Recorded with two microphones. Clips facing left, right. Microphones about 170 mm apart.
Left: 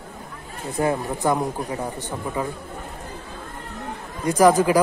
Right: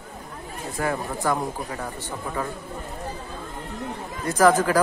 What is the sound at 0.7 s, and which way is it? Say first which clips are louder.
Speech: left 4 dB; 20° left (ahead or behind).